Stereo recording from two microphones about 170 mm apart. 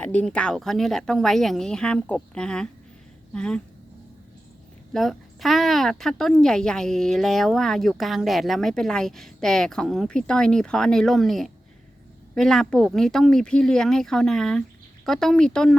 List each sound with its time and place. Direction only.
0.0 s a woman's voice: 10° left (ahead or behind)
4.9 s a woman's voice: centre (ahead or behind)